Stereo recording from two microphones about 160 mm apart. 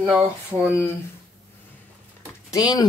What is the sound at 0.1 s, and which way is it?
Speech, 10° right (ahead or behind).